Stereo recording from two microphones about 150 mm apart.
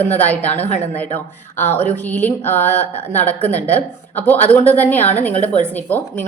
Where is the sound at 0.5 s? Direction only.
45° left (ahead or behind).